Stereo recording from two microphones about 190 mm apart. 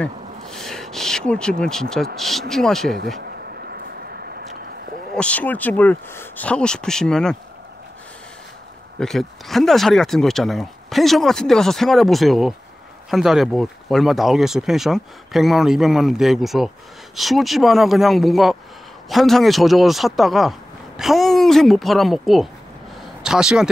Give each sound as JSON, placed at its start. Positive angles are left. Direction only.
{"t": 0.0, "sound": "speech", "side_deg": 0}
{"t": 3.2, "sound": "a sound", "side_deg": -55}
{"t": 5.1, "sound": "speech", "side_deg": 5}
{"t": 9.0, "sound": "a woman's voice", "side_deg": 0}